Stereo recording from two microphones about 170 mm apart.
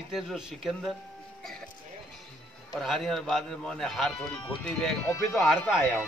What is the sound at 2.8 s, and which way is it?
A man's voice, centre (ahead or behind).